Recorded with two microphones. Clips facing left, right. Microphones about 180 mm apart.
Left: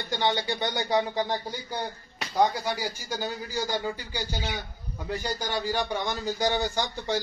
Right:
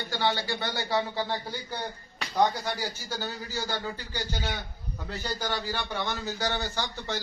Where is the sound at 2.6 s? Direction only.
10° left (ahead or behind).